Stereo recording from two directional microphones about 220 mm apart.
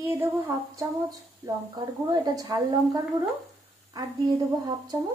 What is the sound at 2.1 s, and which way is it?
Female singing, 15° right (ahead or behind).